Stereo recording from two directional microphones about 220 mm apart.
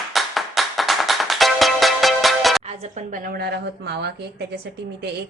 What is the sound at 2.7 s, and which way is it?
A woman's voice, 35° right (ahead or behind).